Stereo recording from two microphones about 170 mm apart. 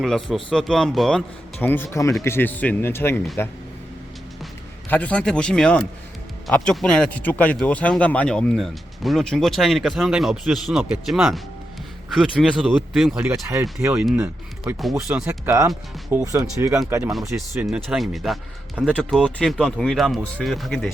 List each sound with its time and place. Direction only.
0.0 s speech: centre (ahead or behind)
4.9 s speech: 10° left (ahead or behind); by 16.8 s 20° right (ahead or behind)
17.1 s speech: centre (ahead or behind)